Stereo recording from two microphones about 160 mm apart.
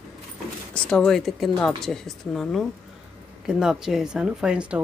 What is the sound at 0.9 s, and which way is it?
A woman's voice, 5° left (ahead or behind).